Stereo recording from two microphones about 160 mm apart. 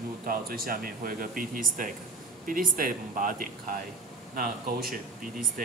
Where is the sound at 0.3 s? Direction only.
65° right (ahead or behind).